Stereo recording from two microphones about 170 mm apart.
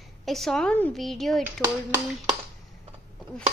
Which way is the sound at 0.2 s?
Centre (ahead or behind).